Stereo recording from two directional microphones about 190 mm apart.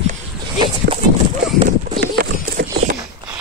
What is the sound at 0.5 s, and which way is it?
Dog, 25° right (ahead or behind).